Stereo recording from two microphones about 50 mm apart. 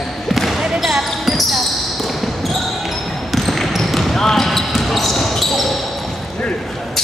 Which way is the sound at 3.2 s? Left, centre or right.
Centre.